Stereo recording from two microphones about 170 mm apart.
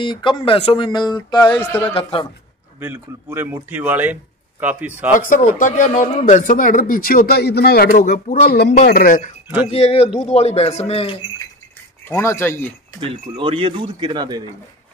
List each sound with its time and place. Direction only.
0.0 s speech: 30° left (ahead or behind)
1.4 s speech: 10° left (ahead or behind)
2.0 s speech: 30° left (ahead or behind)
2.8 s a man's voice: 15° right (ahead or behind)
5.1 s speech: 50° left (ahead or behind); by 8.7 s 70° left (ahead or behind)
8.7 s speech: 60° left (ahead or behind)
9.7 s speech: 35° left (ahead or behind)
12.0 s speech: 15° left (ahead or behind)
13.0 s speech: 35° right (ahead or behind)